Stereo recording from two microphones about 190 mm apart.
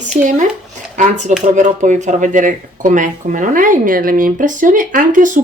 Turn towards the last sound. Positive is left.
turn(degrees=-45)  # may be behind; listen again after turning